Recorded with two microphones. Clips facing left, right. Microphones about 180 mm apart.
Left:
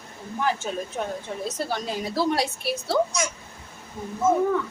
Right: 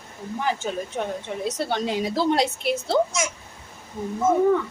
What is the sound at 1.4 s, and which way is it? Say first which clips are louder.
A woman's voice: right 5 dB; 25° right (ahead or behind).